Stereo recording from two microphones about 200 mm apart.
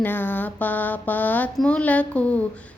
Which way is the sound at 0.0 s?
10° left (ahead or behind).